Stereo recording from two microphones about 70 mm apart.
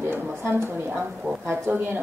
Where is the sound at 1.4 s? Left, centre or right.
Right.